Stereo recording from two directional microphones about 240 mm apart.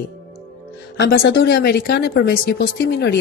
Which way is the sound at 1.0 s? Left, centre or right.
Left.